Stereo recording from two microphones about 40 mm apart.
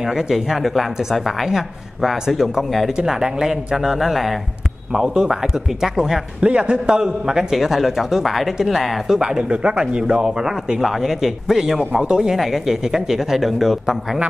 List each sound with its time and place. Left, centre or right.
0.0 s a woman's voice: centre
4.9 s a man's voice: centre
6.4 s a man's voice: right; by 9.1 s centre
9.1 s speech: centre
10.8 s a man's voice: centre
12.4 s a man's voice: centre